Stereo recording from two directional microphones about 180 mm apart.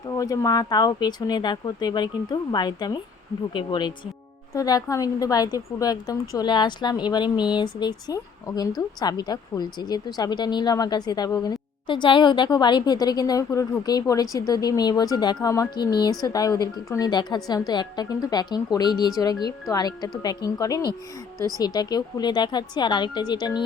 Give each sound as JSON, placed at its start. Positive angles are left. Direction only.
{"t": 0.2, "sound": "speech", "side_deg": 20}
{"t": 21.3, "sound": "a woman's voice", "side_deg": -20}
{"t": 21.6, "sound": "speech", "side_deg": 20}